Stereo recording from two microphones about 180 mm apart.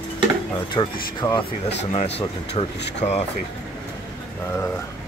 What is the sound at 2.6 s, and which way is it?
Speech, 30° left (ahead or behind).